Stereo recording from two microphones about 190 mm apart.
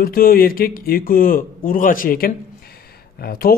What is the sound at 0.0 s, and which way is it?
A man's voice, 50° left (ahead or behind).